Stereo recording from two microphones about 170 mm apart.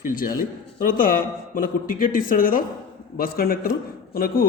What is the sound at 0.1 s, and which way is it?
A man's voice, 55° left (ahead or behind).